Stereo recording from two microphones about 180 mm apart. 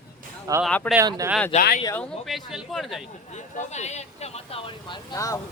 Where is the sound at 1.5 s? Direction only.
35° left (ahead or behind).